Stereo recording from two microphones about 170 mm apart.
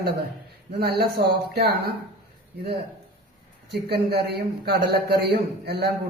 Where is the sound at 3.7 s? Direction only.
75° right (ahead or behind).